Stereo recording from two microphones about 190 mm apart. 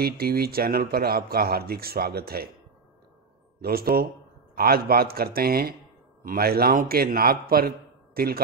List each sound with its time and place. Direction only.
0.0 s speech: 55° right (ahead or behind)
3.6 s speech: 55° right (ahead or behind)